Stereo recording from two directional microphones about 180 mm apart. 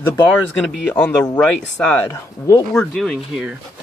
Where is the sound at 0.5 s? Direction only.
Centre (ahead or behind).